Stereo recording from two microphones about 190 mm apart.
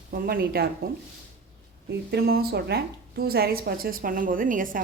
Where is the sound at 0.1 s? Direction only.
55° right (ahead or behind).